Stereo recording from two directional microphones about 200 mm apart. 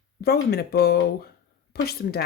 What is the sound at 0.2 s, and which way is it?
Speech, 55° left (ahead or behind).